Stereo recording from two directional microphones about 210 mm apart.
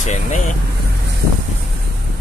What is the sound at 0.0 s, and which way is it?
Vehicle, 35° left (ahead or behind).